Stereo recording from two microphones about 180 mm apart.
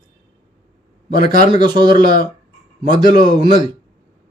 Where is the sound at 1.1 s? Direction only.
45° left (ahead or behind).